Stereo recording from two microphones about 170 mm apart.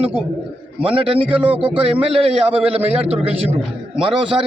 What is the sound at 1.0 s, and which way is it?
A man's voice, 30° right (ahead or behind).